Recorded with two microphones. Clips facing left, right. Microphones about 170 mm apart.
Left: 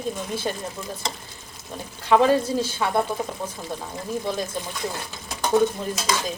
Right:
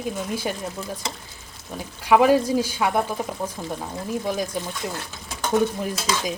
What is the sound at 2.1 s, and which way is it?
Speech, 10° right (ahead or behind).